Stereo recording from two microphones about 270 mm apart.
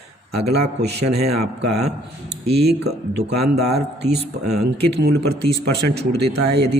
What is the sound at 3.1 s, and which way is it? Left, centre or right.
Speech, right.